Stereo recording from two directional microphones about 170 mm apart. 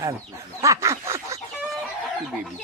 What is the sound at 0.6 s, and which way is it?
Duck, 20° right (ahead or behind).